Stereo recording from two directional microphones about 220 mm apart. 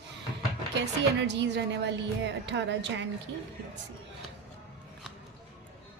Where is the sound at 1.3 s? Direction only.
50° right (ahead or behind).